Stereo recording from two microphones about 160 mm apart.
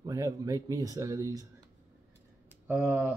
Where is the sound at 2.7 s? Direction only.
15° right (ahead or behind).